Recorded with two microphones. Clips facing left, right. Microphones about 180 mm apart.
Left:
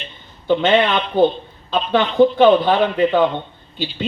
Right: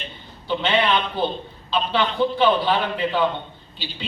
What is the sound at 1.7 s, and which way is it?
Speech, 50° left (ahead or behind).